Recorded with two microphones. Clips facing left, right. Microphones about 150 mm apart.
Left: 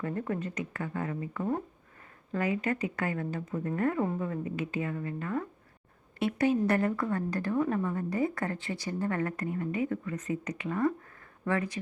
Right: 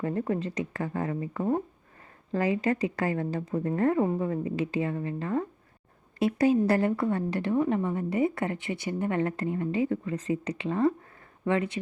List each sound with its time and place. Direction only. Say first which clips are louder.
0.0 s a woman's voice: right 4 dB; 25° right (ahead or behind)